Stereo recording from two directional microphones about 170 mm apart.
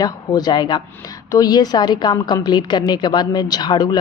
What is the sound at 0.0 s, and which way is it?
A woman's voice, 25° left (ahead or behind).